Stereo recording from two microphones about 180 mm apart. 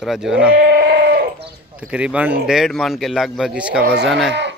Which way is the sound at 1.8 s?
5° right (ahead or behind).